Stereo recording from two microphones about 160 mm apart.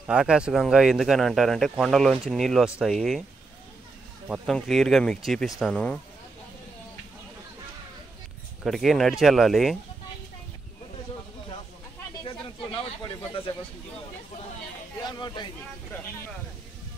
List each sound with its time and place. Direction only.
0.0 s speech: 5° right (ahead or behind)
4.3 s speech: centre (ahead or behind)
8.6 s speech: centre (ahead or behind)
15.0 s speech: 25° left (ahead or behind)